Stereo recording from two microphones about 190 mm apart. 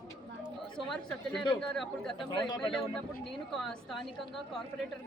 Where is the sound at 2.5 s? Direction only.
25° left (ahead or behind).